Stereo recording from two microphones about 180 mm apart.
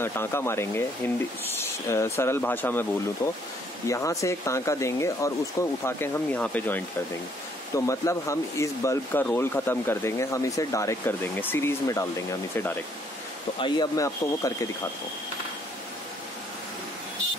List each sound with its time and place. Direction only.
0.0 s speech: 15° left (ahead or behind)
13.6 s speech: 25° left (ahead or behind)